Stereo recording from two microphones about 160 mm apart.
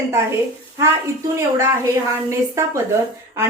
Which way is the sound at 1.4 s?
20° right (ahead or behind).